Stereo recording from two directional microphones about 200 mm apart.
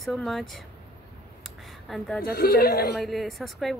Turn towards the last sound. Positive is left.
turn(degrees=0)  # may be behind; listen again after turning